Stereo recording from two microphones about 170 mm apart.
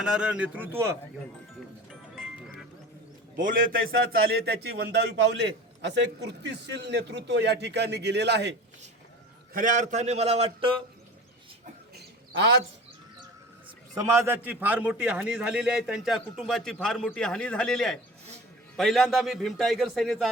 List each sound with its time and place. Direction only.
0.0 s a man's voice: 5° right (ahead or behind)
1.9 s music: centre (ahead or behind)
3.4 s a man's voice: 55° right (ahead or behind); by 8.5 s 90° right
9.5 s a man's voice: 50° right (ahead or behind); by 10.8 s 35° right (ahead or behind)
11.9 s bird: 70° right (ahead or behind)
13.9 s a man's voice: 20° right (ahead or behind); by 20.2 s centre (ahead or behind)